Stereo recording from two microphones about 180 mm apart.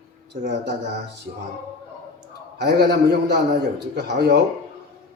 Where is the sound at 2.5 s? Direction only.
70° right (ahead or behind).